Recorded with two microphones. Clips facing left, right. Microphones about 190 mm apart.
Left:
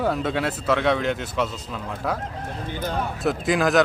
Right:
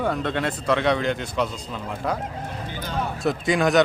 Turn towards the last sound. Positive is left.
turn(degrees=0)  # may be behind; listen again after turning